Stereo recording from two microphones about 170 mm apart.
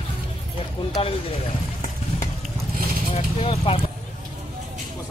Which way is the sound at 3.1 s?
35° left (ahead or behind).